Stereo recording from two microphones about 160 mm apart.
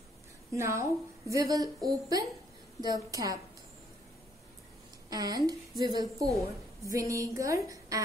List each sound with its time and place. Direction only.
0.5 s a woman's voice: 15° right (ahead or behind)
5.1 s a woman's voice: 25° right (ahead or behind)